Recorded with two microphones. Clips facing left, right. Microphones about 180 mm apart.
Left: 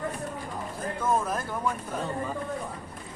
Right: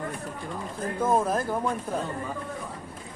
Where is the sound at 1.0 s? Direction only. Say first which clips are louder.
Right 4 dB; 30° right (ahead or behind).